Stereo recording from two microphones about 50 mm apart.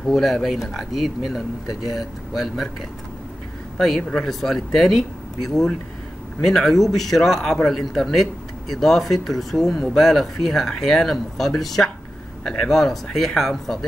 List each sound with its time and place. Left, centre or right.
0.0 s speech: centre
3.7 s speech: centre